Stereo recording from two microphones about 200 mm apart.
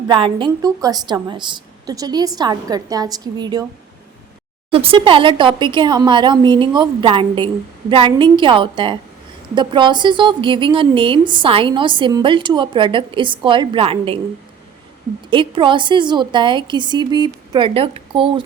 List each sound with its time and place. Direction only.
0.1 s a woman's voice: 25° right (ahead or behind)
4.7 s a woman's voice: 30° right (ahead or behind)
15.3 s a woman's voice: 25° right (ahead or behind)